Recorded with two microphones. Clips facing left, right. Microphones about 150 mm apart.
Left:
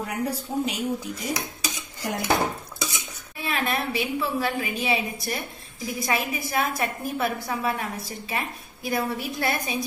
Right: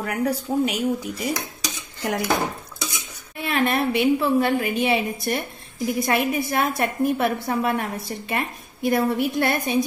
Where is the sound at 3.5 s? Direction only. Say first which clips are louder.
Right 6 dB; 55° right (ahead or behind).